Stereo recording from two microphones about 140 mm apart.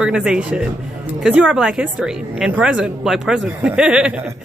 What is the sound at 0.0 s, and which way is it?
Speech, 5° right (ahead or behind).